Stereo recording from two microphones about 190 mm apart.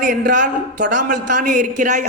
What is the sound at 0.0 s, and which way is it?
A man's voice, 45° right (ahead or behind).